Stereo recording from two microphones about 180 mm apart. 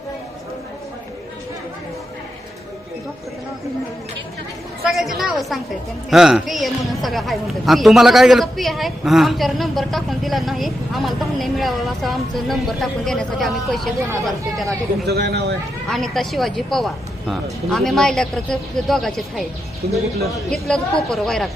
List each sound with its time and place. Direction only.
4.9 s speech: centre (ahead or behind)
15.0 s speech: 65° right (ahead or behind)
15.9 s speech: centre (ahead or behind)
19.8 s speech: 60° right (ahead or behind)
20.3 s speech: 5° left (ahead or behind)